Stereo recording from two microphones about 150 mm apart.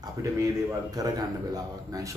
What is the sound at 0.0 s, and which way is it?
A man's voice, 20° right (ahead or behind).